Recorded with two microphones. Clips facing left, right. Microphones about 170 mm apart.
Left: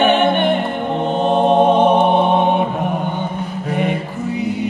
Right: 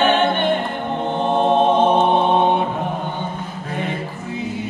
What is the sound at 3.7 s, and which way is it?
Music, 15° left (ahead or behind).